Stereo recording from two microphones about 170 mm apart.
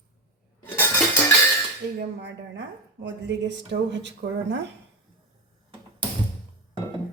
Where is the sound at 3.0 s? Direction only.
90° right.